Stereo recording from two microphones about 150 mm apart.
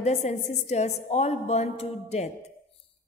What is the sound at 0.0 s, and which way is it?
A woman's voice, 50° left (ahead or behind).